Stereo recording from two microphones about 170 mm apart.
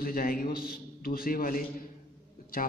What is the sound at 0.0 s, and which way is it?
A man's voice, 60° left (ahead or behind).